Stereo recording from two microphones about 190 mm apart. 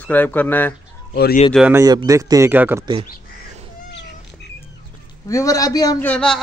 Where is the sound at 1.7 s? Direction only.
20° right (ahead or behind).